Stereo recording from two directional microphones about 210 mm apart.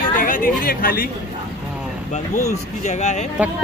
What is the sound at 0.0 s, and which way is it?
A woman's voice, 40° left (ahead or behind).